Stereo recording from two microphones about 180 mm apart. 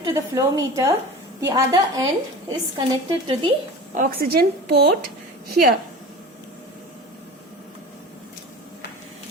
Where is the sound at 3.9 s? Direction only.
50° right (ahead or behind).